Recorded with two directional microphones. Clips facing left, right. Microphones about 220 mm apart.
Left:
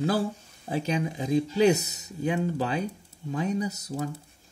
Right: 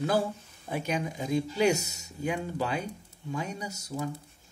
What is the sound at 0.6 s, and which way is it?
Speech, 30° left (ahead or behind).